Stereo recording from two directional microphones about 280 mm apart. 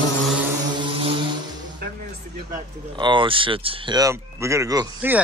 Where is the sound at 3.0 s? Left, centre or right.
Centre.